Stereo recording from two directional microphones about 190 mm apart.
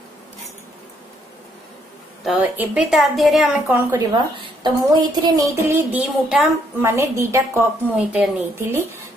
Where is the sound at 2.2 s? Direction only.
5° right (ahead or behind).